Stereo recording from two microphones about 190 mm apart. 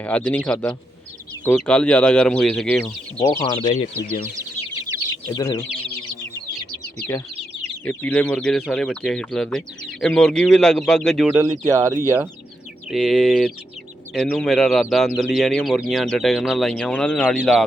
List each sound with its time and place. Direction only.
0.0 s a man's voice: 5° left (ahead or behind)
3.2 s speech: 25° left (ahead or behind)
5.3 s speech: 20° left (ahead or behind)
7.9 s speech: 10° left (ahead or behind)
11.3 s speech: 15° right (ahead or behind)
12.9 s speech: centre (ahead or behind)